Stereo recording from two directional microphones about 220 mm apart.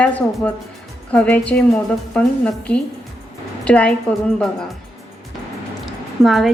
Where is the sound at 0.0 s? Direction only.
5° left (ahead or behind).